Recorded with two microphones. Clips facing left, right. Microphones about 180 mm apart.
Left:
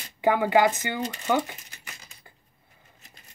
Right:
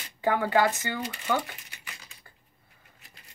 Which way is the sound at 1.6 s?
45° left (ahead or behind).